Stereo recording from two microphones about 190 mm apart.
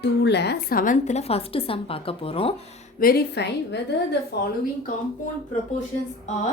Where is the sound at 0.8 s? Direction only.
40° left (ahead or behind).